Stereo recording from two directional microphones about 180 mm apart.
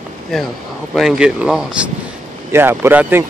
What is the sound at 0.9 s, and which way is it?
Speech, 5° right (ahead or behind).